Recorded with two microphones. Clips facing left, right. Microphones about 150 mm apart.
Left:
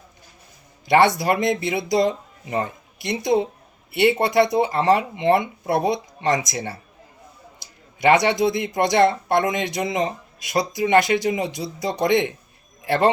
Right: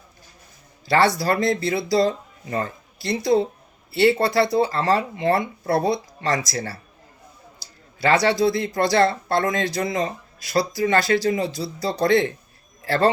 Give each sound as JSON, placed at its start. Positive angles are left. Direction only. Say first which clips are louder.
{"t": 0.9, "sound": "speech", "louder": "left 2 dB", "side_deg": 20}